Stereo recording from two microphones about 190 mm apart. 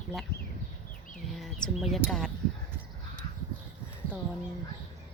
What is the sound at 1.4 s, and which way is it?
Bird, centre (ahead or behind).